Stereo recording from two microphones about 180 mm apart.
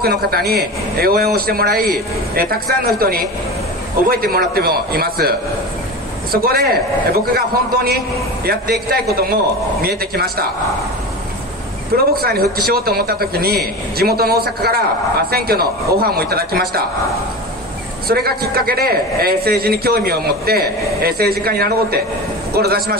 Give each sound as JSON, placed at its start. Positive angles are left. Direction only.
{"t": 0.0, "sound": "a man's voice", "side_deg": -60}
{"t": 6.3, "sound": "a man's voice", "side_deg": -60}
{"t": 11.9, "sound": "a man's voice", "side_deg": -55}
{"t": 18.0, "sound": "a man's voice", "side_deg": -60}